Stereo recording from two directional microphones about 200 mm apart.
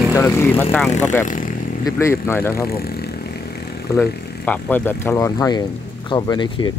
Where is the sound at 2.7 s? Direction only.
50° left (ahead or behind).